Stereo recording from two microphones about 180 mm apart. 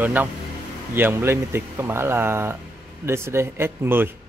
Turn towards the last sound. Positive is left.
turn(degrees=-10)  # may be behind; listen again after turning